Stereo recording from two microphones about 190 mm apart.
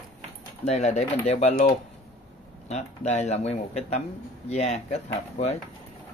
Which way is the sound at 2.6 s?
35° left (ahead or behind).